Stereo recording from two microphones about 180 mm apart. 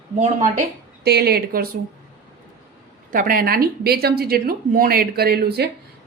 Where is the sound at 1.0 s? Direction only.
65° right (ahead or behind).